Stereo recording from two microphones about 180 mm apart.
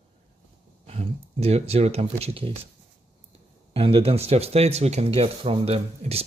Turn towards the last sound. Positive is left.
turn(degrees=-35)  # may be behind; listen again after turning